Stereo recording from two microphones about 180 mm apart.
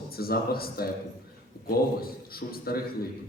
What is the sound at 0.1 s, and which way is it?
A man's voice, 55° left (ahead or behind).